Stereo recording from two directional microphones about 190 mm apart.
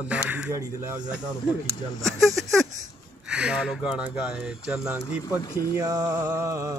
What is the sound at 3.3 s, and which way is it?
Speech, 5° right (ahead or behind).